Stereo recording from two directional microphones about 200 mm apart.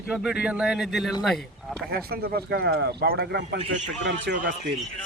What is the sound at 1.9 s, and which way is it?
Speech, 50° right (ahead or behind).